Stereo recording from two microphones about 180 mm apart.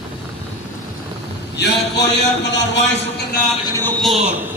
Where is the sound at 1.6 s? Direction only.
65° left (ahead or behind).